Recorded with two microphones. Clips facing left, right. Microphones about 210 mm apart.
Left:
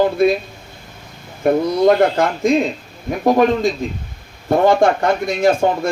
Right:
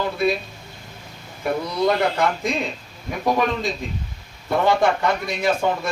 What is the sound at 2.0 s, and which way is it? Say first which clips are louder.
Speech: left 6 dB; 50° left (ahead or behind).